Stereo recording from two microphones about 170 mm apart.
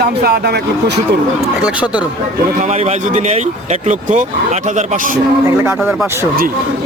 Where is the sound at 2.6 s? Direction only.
40° right (ahead or behind).